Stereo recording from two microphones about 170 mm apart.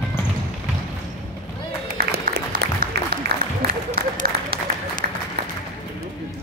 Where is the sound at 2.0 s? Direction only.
65° right (ahead or behind).